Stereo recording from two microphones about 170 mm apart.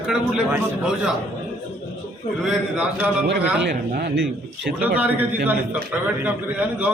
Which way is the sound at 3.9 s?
75° right (ahead or behind).